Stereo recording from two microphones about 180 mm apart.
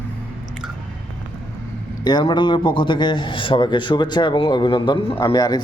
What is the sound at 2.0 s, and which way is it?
A man's voice, 25° left (ahead or behind).